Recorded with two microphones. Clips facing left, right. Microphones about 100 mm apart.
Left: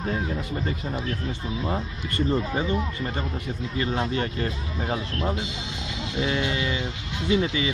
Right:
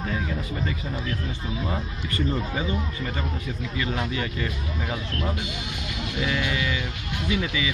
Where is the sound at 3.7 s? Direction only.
35° left (ahead or behind).